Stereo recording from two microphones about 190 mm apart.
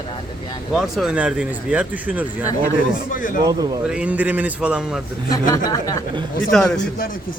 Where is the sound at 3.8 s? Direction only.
5° right (ahead or behind).